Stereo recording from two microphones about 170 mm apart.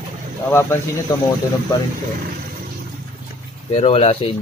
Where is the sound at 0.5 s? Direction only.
15° left (ahead or behind).